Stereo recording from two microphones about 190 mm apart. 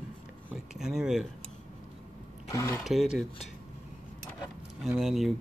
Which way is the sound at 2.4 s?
15° left (ahead or behind).